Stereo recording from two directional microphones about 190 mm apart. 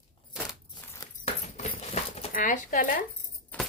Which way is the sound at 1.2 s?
35° left (ahead or behind).